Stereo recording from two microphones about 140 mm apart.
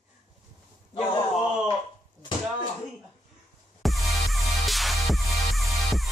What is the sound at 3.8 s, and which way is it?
Music, centre (ahead or behind).